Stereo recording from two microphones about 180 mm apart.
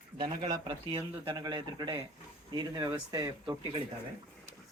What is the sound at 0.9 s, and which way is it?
Speech, 25° right (ahead or behind).